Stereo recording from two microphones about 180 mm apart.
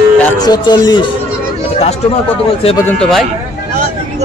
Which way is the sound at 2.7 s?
10° left (ahead or behind).